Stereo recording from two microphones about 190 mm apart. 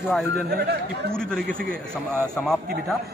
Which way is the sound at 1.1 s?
5° left (ahead or behind).